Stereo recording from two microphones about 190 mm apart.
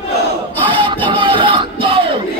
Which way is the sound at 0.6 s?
25° right (ahead or behind).